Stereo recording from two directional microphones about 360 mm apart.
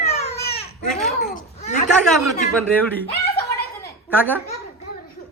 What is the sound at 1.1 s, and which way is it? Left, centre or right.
Speech, left.